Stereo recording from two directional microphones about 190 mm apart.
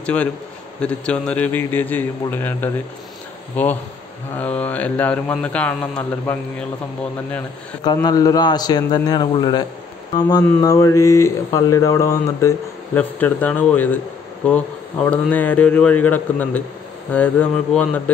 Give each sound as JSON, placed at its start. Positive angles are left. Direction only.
{"t": 0.0, "sound": "a man's voice", "side_deg": 5}
{"t": 4.4, "sound": "speech", "side_deg": 5}
{"t": 7.8, "sound": "a man's voice", "side_deg": 20}